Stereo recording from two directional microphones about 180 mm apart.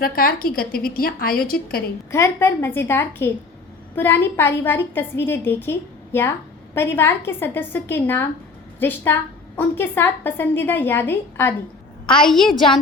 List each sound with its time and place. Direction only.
0.0 s a woman's voice: 55° left (ahead or behind)
2.1 s a woman's voice: 15° left (ahead or behind)
12.2 s a woman's voice: centre (ahead or behind)